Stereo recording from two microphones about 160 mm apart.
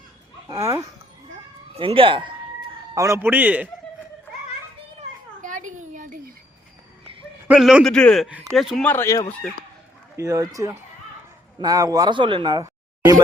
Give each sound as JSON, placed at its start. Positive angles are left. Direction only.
{"t": 0.4, "sound": "speech", "side_deg": -20}
{"t": 1.7, "sound": "speech", "side_deg": -35}
{"t": 2.9, "sound": "speech", "side_deg": -20}
{"t": 5.4, "sound": "a sound", "side_deg": -55}
{"t": 7.4, "sound": "a man's voice", "side_deg": -5}
{"t": 8.9, "sound": "speech", "side_deg": 15}
{"t": 10.2, "sound": "speech", "side_deg": -20}